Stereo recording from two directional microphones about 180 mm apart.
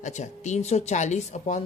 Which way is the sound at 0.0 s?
40° left (ahead or behind).